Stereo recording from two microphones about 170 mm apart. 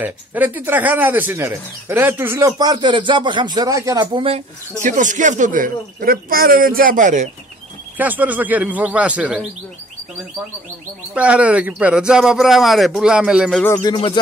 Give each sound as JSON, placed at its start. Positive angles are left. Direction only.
{"t": 0.0, "sound": "speech", "side_deg": -10}
{"t": 4.8, "sound": "speech", "side_deg": -50}
{"t": 8.0, "sound": "speech", "side_deg": -10}
{"t": 11.1, "sound": "speech", "side_deg": -5}
{"t": 13.8, "sound": "music", "side_deg": 30}